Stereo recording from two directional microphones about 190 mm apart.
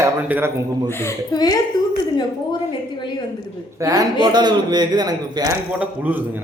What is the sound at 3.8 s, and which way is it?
A man's voice, 20° right (ahead or behind).